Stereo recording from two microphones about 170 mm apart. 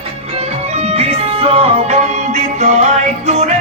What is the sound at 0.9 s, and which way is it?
Music, 35° right (ahead or behind).